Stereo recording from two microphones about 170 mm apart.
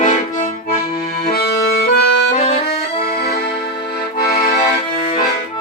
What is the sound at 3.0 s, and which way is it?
Accordion, 70° left (ahead or behind).